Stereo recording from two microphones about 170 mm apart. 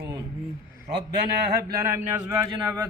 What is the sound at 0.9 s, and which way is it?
Speech, 80° right.